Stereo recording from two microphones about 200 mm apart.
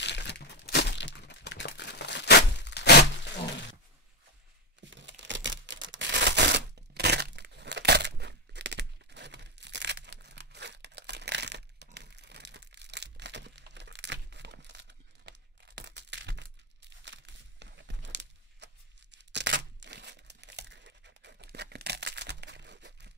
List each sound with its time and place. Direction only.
0.0 s crumpling: 60° left (ahead or behind)
4.7 s a sound: 65° right (ahead or behind)
17.0 s tearing: 60° right (ahead or behind)